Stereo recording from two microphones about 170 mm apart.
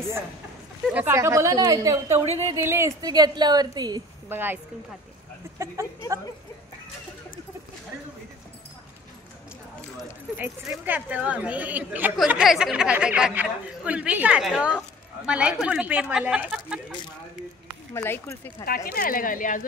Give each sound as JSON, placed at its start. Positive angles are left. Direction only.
{"t": 0.9, "sound": "a woman's voice", "side_deg": -15}
{"t": 4.3, "sound": "speech", "side_deg": -10}
{"t": 5.6, "sound": "speech", "side_deg": -20}
{"t": 9.9, "sound": "speech", "side_deg": -5}
{"t": 17.9, "sound": "speech", "side_deg": 15}
{"t": 18.9, "sound": "speech", "side_deg": 55}